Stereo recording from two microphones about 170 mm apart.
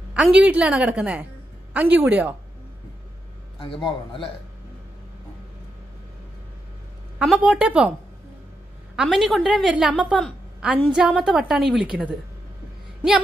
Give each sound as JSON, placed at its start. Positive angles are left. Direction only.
{"t": 0.1, "sound": "a woman's voice", "side_deg": -5}
{"t": 3.8, "sound": "a man's voice", "side_deg": 30}
{"t": 7.2, "sound": "a woman's voice", "side_deg": -10}
{"t": 8.9, "sound": "a woman's voice", "side_deg": 0}